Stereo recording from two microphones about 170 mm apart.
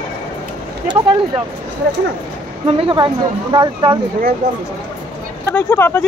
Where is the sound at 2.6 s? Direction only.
35° right (ahead or behind).